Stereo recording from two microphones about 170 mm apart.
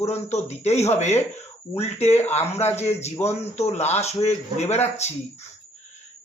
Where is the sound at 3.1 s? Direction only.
15° left (ahead or behind).